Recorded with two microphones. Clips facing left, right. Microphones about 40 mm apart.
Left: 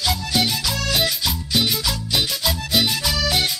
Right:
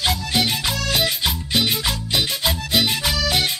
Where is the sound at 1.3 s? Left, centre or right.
Right.